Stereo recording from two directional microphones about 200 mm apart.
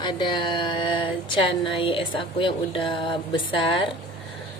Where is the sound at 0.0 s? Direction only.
20° left (ahead or behind).